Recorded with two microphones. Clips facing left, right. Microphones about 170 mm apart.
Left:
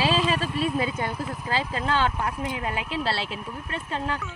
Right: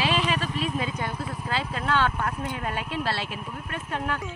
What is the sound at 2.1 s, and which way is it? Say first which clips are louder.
Speech: left 1 dB; 10° left (ahead or behind).